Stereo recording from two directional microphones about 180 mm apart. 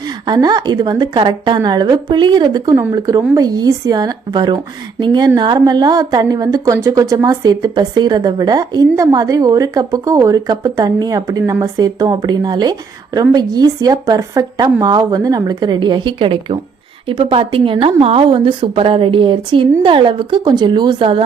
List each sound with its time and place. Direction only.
0.3 s a woman's voice: 20° right (ahead or behind)